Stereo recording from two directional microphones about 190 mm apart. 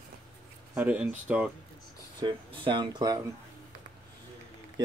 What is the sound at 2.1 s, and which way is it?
Speech, 25° right (ahead or behind).